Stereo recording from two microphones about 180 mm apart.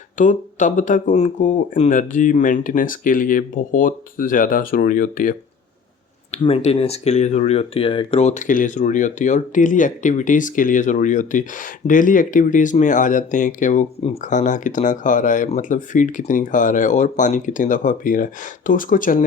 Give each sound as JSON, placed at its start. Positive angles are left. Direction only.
{"t": 0.2, "sound": "speech", "side_deg": 45}
{"t": 6.3, "sound": "speech", "side_deg": 35}